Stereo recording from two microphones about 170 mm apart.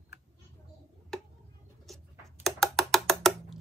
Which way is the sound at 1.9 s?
Centre (ahead or behind).